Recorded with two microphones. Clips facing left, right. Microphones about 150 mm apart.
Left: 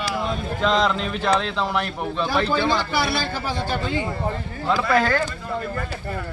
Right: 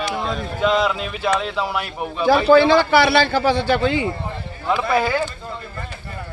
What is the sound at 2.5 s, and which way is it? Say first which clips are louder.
A man's voice: right 9 dB; 80° right.